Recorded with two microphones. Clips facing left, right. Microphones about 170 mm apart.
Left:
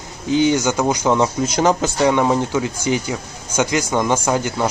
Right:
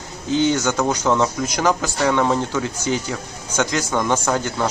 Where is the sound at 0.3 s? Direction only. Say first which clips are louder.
Left 2 dB; 15° left (ahead or behind).